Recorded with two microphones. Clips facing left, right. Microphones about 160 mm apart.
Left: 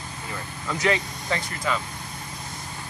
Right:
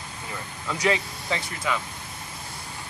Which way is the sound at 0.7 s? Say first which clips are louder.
Even; 10° right (ahead or behind).